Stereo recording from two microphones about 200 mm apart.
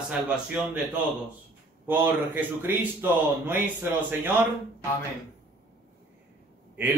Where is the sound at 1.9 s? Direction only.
10° right (ahead or behind).